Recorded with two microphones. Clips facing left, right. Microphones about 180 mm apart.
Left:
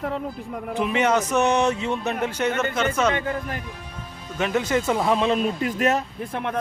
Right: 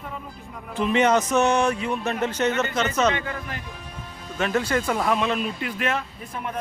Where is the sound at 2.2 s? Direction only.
10° left (ahead or behind).